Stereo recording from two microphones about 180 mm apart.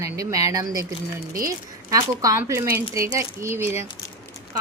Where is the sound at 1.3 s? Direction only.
50° right (ahead or behind).